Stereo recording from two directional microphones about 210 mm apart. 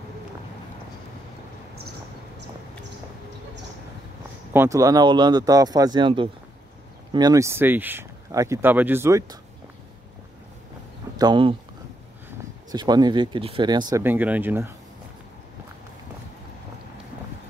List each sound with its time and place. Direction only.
4.6 s speech: 15° right (ahead or behind)
11.1 s speech: 20° right (ahead or behind)
12.7 s speech: 20° right (ahead or behind)